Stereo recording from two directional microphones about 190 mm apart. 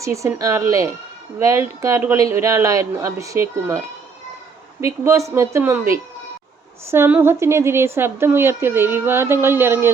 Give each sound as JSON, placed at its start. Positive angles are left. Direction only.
{"t": 0.0, "sound": "a woman's voice", "side_deg": -15}